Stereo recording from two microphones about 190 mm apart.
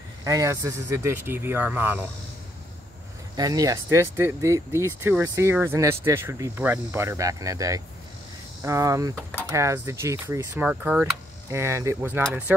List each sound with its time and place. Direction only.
0.2 s speech: 15° right (ahead or behind)
3.3 s speech: 20° right (ahead or behind)